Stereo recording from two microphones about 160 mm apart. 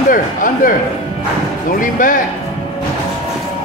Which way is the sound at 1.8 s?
55° left (ahead or behind).